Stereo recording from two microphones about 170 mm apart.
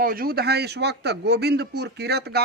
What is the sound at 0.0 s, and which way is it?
A man's voice, 60° right (ahead or behind).